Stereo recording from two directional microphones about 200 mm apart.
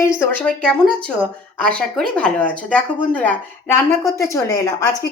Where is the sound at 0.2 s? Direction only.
5° left (ahead or behind).